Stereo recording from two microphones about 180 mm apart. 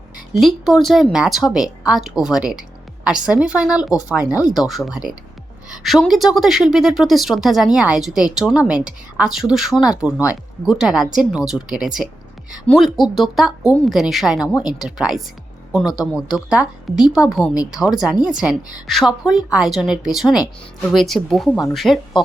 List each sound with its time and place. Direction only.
0.3 s speech: centre (ahead or behind)